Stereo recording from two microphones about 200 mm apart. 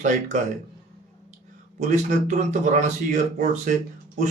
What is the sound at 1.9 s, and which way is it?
Speech, 35° right (ahead or behind).